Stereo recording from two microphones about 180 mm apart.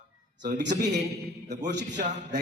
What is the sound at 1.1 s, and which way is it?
Speech, 65° right (ahead or behind).